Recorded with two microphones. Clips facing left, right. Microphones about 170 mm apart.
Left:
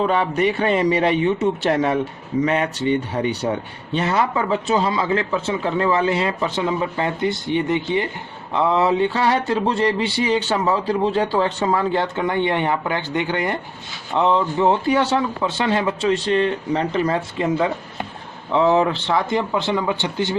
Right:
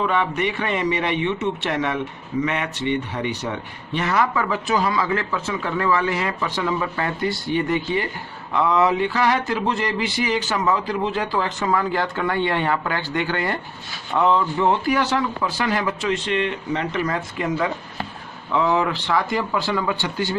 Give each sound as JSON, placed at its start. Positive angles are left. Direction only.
{"t": 0.0, "sound": "a man's voice", "side_deg": 35}